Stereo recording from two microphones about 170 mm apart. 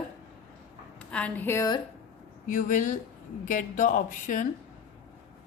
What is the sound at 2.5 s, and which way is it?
Speech, 50° left (ahead or behind).